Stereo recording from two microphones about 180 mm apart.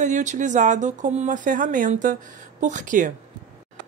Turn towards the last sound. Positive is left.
turn(degrees=-45)  # may be behind; listen again after turning